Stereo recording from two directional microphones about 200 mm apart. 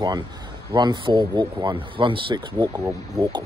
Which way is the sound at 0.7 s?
25° right (ahead or behind).